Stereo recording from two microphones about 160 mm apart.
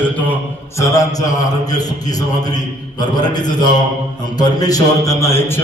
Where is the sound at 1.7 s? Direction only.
25° left (ahead or behind).